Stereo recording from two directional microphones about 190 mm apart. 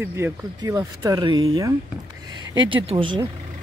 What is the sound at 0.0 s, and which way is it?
Speech, 15° right (ahead or behind).